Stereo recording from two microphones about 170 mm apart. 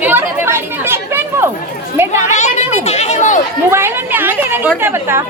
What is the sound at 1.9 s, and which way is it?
Children playing, 15° right (ahead or behind).